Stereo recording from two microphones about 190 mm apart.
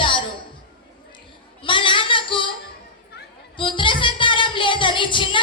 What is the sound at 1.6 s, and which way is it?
Child singing, 25° left (ahead or behind).